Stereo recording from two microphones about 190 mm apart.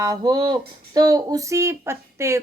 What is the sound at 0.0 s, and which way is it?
A woman's voice, 20° right (ahead or behind).